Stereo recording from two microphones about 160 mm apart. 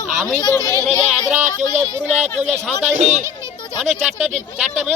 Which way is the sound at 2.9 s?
45° right (ahead or behind).